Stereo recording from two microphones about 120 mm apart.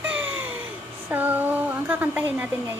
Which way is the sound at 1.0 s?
15° right (ahead or behind).